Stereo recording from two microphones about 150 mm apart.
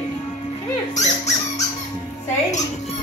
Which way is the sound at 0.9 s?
50° left (ahead or behind).